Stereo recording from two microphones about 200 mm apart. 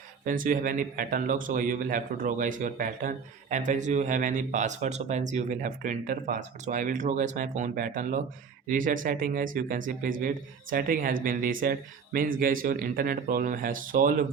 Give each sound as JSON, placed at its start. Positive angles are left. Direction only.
{"t": 0.3, "sound": "a man's voice", "side_deg": -45}